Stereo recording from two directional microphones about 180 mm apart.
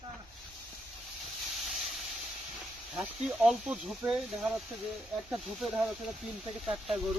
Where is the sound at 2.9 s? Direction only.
5° right (ahead or behind).